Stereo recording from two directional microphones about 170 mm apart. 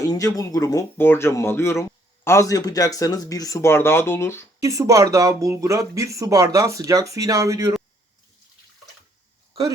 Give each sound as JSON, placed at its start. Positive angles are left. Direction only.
{"t": 0.0, "sound": "speech", "side_deg": 20}
{"t": 4.6, "sound": "speech", "side_deg": -20}
{"t": 9.5, "sound": "speech", "side_deg": -20}